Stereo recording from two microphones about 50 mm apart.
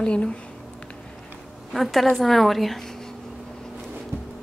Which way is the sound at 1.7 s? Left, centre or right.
Centre.